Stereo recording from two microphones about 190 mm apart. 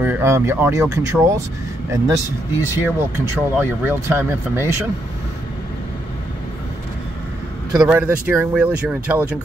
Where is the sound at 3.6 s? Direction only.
10° right (ahead or behind).